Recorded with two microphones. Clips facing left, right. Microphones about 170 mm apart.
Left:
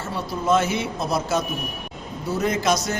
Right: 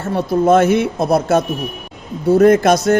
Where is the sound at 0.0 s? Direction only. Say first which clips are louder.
Right 11 dB; 55° right (ahead or behind).